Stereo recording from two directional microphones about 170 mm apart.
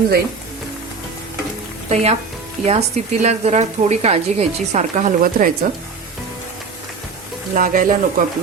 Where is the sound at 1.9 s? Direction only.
40° right (ahead or behind).